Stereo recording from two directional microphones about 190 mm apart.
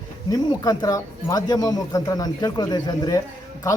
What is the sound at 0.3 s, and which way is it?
A man's voice, 20° left (ahead or behind).